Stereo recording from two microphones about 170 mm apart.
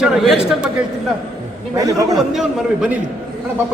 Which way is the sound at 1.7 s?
20° right (ahead or behind).